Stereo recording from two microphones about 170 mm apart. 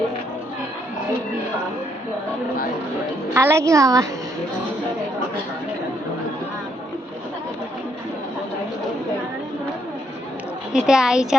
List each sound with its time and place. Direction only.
3.3 s a woman's voice: 15° right (ahead or behind)
10.7 s a woman's voice: 5° right (ahead or behind)